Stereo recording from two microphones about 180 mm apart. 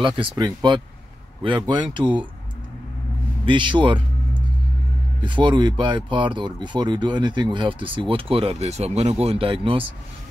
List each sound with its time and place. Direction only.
0.0 s speech: 25° right (ahead or behind)
3.4 s speech: 25° right (ahead or behind)
5.2 s speech: 25° right (ahead or behind)